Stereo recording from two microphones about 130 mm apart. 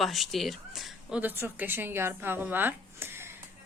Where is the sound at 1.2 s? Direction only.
15° right (ahead or behind).